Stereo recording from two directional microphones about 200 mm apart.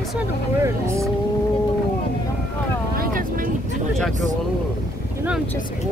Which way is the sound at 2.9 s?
45° right (ahead or behind).